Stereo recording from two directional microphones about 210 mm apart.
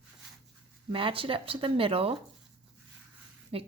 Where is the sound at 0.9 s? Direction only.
25° right (ahead or behind).